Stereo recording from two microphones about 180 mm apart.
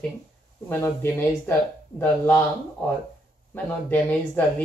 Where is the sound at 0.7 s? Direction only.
10° left (ahead or behind).